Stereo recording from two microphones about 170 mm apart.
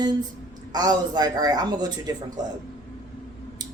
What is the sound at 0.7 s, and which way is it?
Speech, 25° right (ahead or behind).